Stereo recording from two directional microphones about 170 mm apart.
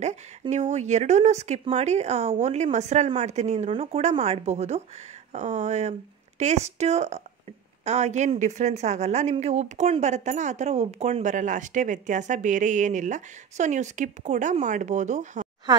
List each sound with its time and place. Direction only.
0.4 s a woman's voice: 40° right (ahead or behind)